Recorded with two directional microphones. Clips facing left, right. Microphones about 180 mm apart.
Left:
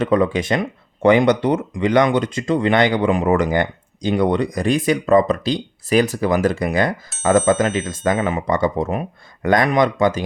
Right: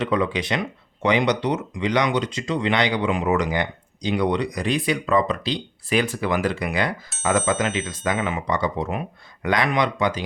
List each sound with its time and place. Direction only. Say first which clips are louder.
0.0 s speech: left 5 dB; 45° left (ahead or behind)
7.1 s speech: left 4 dB; centre (ahead or behind)
7.9 s speech: left 5 dB; 45° left (ahead or behind)